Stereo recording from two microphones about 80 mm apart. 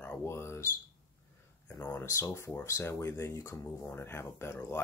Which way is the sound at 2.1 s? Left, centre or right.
Left.